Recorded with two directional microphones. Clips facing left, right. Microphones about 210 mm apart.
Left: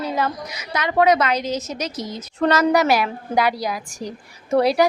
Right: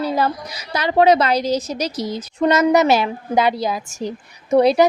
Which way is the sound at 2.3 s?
15° right (ahead or behind).